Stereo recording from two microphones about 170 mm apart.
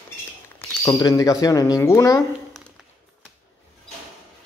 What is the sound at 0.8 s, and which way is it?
Speech, 20° left (ahead or behind).